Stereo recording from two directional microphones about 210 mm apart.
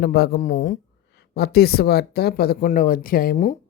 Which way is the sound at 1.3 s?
50° left (ahead or behind).